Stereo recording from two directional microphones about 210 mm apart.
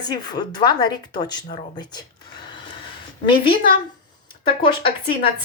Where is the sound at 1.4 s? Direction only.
30° left (ahead or behind).